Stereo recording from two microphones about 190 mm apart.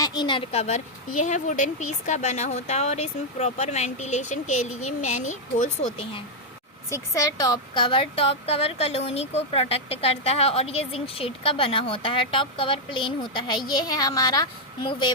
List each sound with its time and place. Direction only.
0.0 s speech: 20° left (ahead or behind)
6.9 s a woman's voice: 15° left (ahead or behind)